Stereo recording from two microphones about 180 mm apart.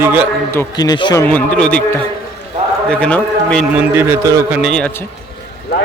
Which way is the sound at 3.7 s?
10° right (ahead or behind).